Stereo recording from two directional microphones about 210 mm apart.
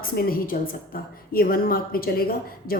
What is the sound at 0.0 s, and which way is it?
A woman's voice, 45° left (ahead or behind).